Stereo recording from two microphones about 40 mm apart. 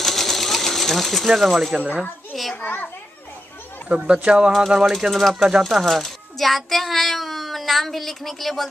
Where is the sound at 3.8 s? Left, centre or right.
Right.